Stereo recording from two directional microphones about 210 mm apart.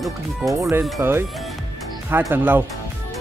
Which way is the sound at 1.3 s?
Centre (ahead or behind).